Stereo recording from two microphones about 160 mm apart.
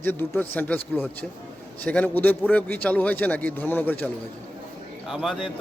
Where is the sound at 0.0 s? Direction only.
10° left (ahead or behind).